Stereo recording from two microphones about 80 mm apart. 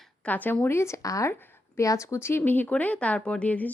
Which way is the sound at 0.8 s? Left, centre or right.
Left.